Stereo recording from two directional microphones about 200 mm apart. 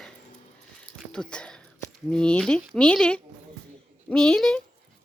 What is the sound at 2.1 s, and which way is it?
Speech, 5° left (ahead or behind).